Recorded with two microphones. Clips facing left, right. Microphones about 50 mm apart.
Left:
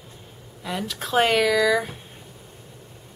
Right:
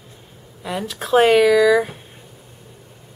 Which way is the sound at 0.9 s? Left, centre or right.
Centre.